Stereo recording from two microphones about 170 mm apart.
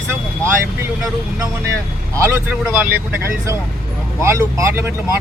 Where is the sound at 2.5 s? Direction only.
10° right (ahead or behind).